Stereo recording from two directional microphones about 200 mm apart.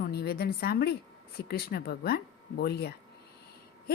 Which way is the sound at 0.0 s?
50° left (ahead or behind).